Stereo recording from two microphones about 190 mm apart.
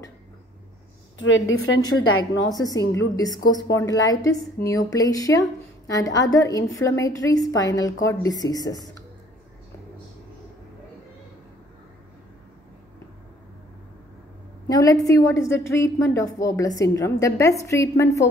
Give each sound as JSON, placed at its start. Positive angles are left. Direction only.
{"t": 1.1, "sound": "a woman's voice", "side_deg": 80}
{"t": 1.8, "sound": "a woman's voice", "side_deg": 20}
{"t": 14.7, "sound": "a woman's voice", "side_deg": 20}